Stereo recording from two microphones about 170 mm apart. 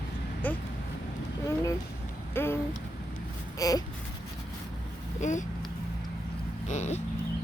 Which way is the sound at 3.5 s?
20° left (ahead or behind).